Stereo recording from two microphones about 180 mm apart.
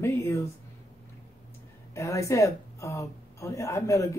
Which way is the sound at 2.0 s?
15° left (ahead or behind).